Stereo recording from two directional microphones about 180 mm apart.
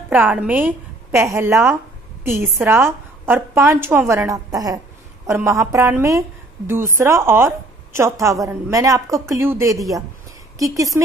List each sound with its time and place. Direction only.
0.1 s a woman's voice: 10° right (ahead or behind)